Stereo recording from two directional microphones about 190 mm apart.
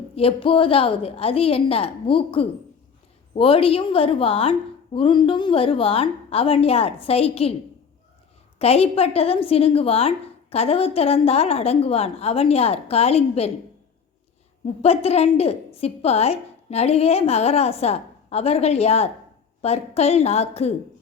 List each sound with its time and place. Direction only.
0.2 s a woman's voice: 30° left (ahead or behind)
8.5 s a woman's voice: 30° left (ahead or behind)
14.8 s a woman's voice: 35° left (ahead or behind)